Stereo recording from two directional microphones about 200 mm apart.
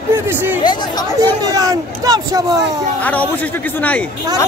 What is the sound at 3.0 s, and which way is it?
A man's voice, 10° left (ahead or behind).